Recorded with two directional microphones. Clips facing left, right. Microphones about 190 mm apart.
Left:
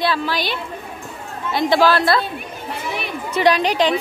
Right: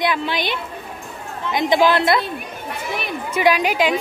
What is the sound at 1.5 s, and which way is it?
Speech, 15° right (ahead or behind).